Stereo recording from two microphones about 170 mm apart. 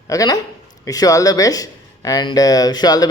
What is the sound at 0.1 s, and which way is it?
A man's voice, 20° left (ahead or behind).